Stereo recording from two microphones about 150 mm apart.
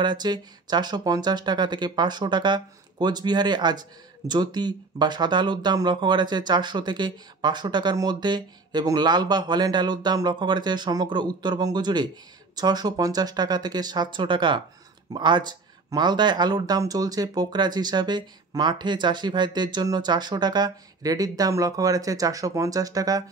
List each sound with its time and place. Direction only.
0.0 s speech: 30° right (ahead or behind)